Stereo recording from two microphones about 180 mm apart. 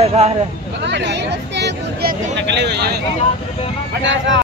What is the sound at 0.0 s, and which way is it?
Speech, 35° right (ahead or behind).